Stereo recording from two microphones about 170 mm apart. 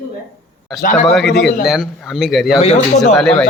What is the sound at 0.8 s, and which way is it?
Speech, 50° left (ahead or behind).